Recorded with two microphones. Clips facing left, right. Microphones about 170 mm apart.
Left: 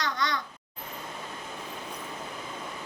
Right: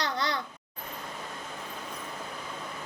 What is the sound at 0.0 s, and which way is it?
Babbling, 30° right (ahead or behind).